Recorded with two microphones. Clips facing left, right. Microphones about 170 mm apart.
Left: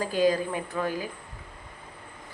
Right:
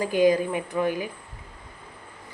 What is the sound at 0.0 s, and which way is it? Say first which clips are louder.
A woman's voice: right 4 dB; 15° right (ahead or behind).